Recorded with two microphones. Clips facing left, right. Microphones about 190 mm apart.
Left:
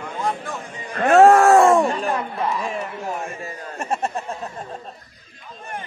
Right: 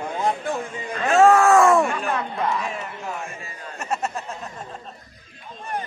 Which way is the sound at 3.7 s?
30° left (ahead or behind).